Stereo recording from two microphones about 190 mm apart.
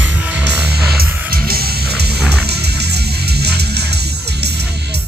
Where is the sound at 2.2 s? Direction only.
5° left (ahead or behind).